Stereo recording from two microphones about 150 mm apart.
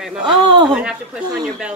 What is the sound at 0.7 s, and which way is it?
A woman's voice, 5° right (ahead or behind).